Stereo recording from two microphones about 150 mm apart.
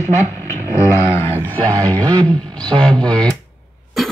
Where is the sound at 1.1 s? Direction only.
15° left (ahead or behind).